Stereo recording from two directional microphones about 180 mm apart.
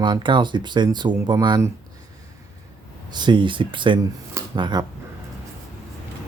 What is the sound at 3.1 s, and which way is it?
Speech, 25° right (ahead or behind).